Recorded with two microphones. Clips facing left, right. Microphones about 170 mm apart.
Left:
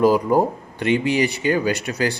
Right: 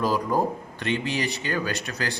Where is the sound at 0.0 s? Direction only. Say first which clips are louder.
Left 7 dB; 20° left (ahead or behind).